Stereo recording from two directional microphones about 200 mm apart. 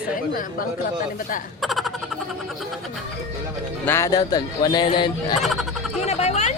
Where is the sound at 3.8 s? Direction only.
15° left (ahead or behind).